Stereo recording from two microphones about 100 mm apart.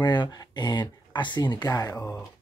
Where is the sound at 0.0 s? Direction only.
45° left (ahead or behind).